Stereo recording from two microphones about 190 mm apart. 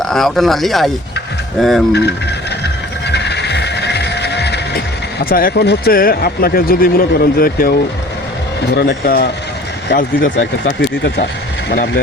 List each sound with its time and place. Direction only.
0.0 s speech: centre (ahead or behind)
1.9 s speech: 65° left (ahead or behind)
3.1 s music: 65° left (ahead or behind)
5.2 s speech: 50° left (ahead or behind)